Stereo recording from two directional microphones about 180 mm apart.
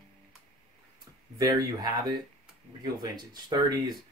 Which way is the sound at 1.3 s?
20° right (ahead or behind).